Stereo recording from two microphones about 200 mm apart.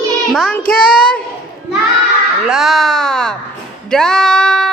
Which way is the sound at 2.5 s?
Centre (ahead or behind).